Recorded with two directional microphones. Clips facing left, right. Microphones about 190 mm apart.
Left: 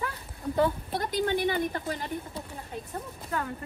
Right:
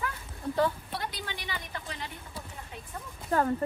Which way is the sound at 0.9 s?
45° left (ahead or behind).